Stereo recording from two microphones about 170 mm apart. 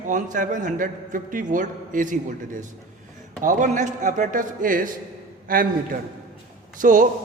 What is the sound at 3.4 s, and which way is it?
A man's voice, 50° right (ahead or behind).